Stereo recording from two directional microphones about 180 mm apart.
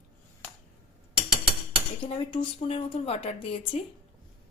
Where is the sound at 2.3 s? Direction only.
35° left (ahead or behind).